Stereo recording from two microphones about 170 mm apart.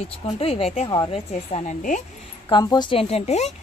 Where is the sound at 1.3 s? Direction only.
40° left (ahead or behind).